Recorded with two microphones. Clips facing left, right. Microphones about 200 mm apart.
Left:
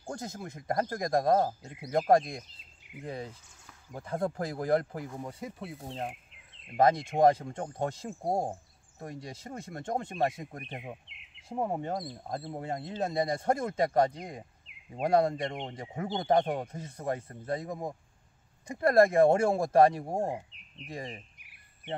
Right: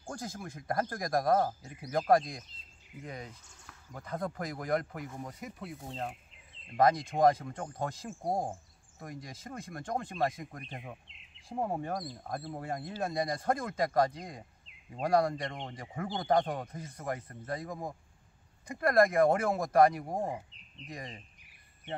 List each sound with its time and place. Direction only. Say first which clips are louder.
0.1 s speech: left 2 dB; 20° left (ahead or behind)
5.9 s speech: left 2 dB; 15° left (ahead or behind)
11.1 s bird: left 2 dB; 65° left (ahead or behind)
11.4 s speech: left 2 dB; 20° left (ahead or behind)
20.2 s bird: left 3 dB; 5° left (ahead or behind)
20.9 s speech: left 4 dB; 25° left (ahead or behind)